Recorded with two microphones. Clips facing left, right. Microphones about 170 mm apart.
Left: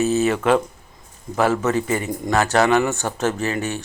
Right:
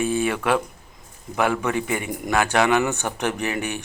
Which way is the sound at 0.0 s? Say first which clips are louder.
Left 4 dB; 10° right (ahead or behind).